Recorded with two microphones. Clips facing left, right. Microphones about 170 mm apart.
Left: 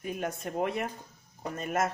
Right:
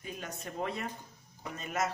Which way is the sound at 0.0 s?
55° left (ahead or behind).